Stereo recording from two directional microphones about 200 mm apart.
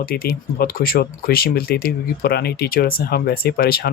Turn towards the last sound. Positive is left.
turn(degrees=50)  # may be behind; listen again after turning